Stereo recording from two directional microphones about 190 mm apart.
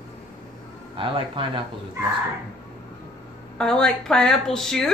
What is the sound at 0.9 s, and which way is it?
Speech, 25° right (ahead or behind).